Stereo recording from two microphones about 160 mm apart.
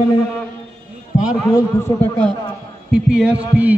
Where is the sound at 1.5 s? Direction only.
20° left (ahead or behind).